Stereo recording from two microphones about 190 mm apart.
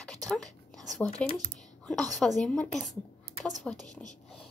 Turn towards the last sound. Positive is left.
turn(degrees=0)  # may be behind; listen again after turning